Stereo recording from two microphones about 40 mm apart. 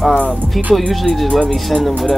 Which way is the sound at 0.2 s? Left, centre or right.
Right.